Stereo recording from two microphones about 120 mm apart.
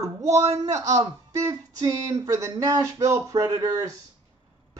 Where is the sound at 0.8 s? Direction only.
30° right (ahead or behind).